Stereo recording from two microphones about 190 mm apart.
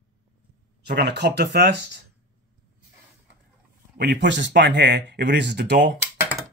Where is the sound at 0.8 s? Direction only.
60° right (ahead or behind).